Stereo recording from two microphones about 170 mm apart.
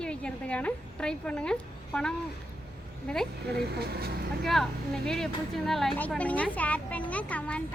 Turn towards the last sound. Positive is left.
turn(degrees=10)  # may be behind; listen again after turning